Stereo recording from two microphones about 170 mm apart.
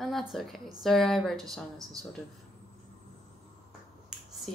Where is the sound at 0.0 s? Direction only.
Centre (ahead or behind).